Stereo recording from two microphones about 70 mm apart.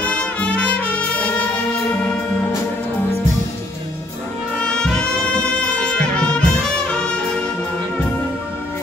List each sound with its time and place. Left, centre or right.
0.0 s music: centre
4.6 s brass instrument: centre
5.4 s music: centre